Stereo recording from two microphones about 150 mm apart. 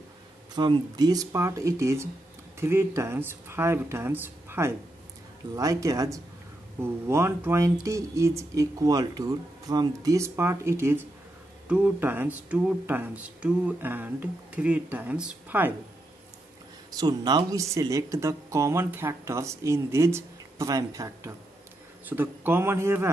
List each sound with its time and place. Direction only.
0.6 s speech: 30° right (ahead or behind); by 15.7 s 10° right (ahead or behind)
16.9 s speech: 25° right (ahead or behind)